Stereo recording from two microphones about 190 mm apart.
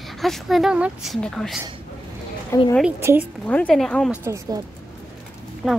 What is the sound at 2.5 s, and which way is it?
Speech, 15° left (ahead or behind).